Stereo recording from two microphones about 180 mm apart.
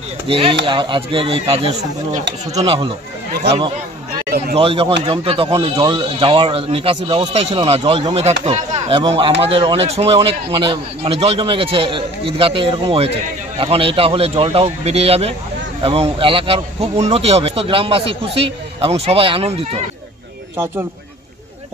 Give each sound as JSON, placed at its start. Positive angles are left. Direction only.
{"t": 0.3, "sound": "a man's voice", "side_deg": -30}
{"t": 4.6, "sound": "a man's voice", "side_deg": -30}